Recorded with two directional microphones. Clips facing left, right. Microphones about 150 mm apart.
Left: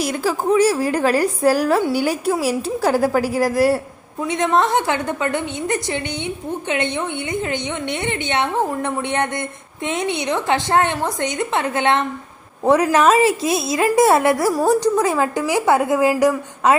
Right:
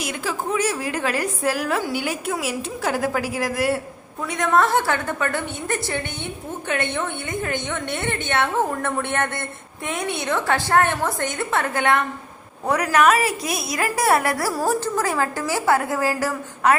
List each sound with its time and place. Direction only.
0.0 s a woman's voice: 35° left (ahead or behind)
4.2 s a woman's voice: 20° left (ahead or behind)